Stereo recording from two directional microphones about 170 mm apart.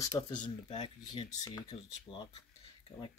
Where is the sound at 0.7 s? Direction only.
30° left (ahead or behind).